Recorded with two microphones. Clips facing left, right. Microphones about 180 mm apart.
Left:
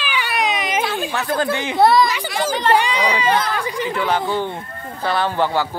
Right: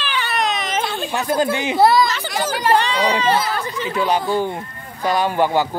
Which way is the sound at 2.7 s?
10° left (ahead or behind).